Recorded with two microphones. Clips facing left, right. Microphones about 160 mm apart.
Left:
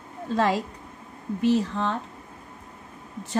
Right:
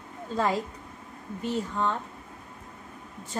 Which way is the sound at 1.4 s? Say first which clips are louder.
Left 6 dB; 90° left.